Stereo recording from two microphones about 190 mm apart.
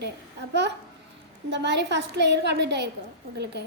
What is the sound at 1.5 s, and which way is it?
A woman's voice, 65° right (ahead or behind).